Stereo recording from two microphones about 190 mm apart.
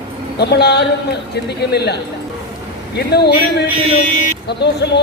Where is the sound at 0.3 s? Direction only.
60° left (ahead or behind).